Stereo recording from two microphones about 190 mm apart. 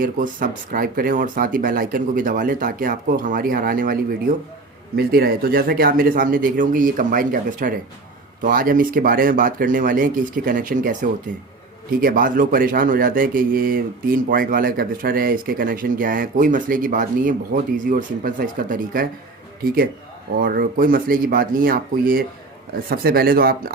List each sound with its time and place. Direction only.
0.0 s speech: 45° right (ahead or behind)
4.9 s speech: 55° right (ahead or behind)